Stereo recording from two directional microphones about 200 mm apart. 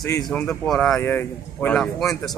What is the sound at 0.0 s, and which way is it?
Speech, 20° left (ahead or behind).